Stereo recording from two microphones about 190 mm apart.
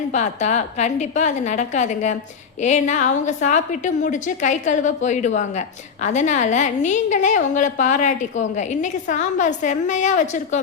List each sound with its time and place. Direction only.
0.1 s a woman's voice: 40° left (ahead or behind)